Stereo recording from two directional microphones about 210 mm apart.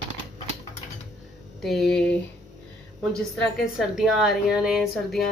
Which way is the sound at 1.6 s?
Centre (ahead or behind).